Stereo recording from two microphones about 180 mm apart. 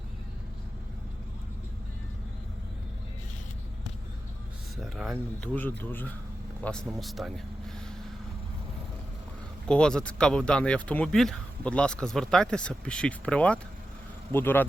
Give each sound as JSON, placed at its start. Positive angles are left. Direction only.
{"t": 4.8, "sound": "a sound", "side_deg": 0}
{"t": 5.4, "sound": "speech", "side_deg": 10}
{"t": 9.6, "sound": "speech", "side_deg": 5}